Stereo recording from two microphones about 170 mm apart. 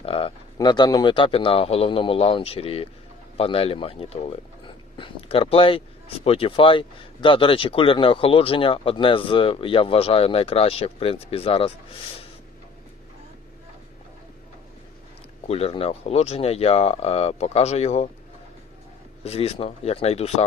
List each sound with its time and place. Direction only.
0.0 s speech: 30° left (ahead or behind)
15.4 s speech: 35° left (ahead or behind)
19.2 s speech: 35° left (ahead or behind)